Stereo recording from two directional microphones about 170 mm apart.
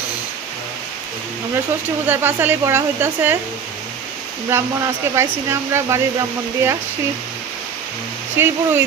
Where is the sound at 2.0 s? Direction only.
10° right (ahead or behind).